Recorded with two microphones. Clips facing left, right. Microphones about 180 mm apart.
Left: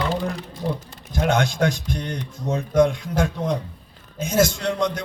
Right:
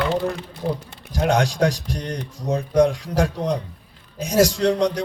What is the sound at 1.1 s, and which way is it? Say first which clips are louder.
A man's voice: right 1 dB; 35° right (ahead or behind).